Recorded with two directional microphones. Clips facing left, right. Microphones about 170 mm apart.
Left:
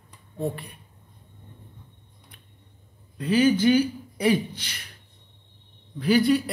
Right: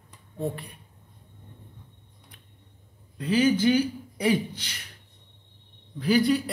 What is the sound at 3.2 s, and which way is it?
Speech, 55° left (ahead or behind).